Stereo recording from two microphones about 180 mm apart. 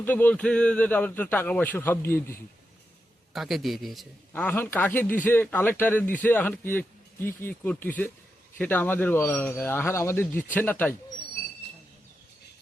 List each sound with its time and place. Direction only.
0.0 s a man's voice: 10° left (ahead or behind)
3.3 s a man's voice: centre (ahead or behind)